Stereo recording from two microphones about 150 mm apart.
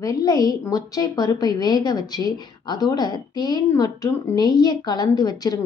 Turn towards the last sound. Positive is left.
turn(degrees=25)  # may be behind; listen again after turning